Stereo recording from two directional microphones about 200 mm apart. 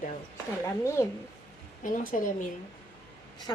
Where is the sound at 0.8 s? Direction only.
15° left (ahead or behind).